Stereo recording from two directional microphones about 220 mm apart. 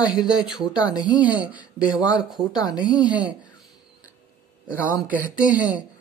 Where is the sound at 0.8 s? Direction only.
20° left (ahead or behind).